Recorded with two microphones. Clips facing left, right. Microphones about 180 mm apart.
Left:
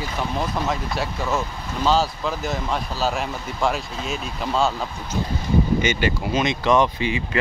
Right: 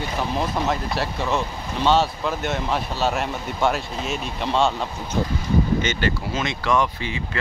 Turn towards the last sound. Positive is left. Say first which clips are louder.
# left 3 dB
turn(degrees=15)  # may be behind; listen again after turning